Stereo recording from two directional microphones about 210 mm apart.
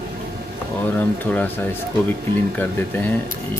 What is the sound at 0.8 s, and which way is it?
Speech, 10° left (ahead or behind).